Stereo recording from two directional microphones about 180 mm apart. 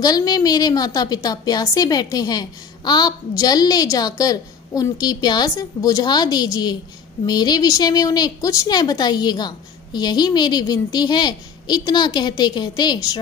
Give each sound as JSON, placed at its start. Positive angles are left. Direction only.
{"t": 0.0, "sound": "a woman's voice", "side_deg": 20}